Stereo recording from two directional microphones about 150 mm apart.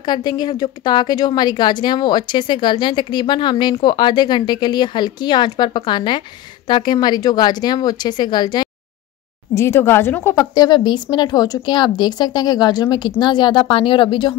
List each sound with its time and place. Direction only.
0.0 s a woman's voice: 25° left (ahead or behind)
9.6 s a woman's voice: 15° left (ahead or behind); by 14.3 s 35° left (ahead or behind)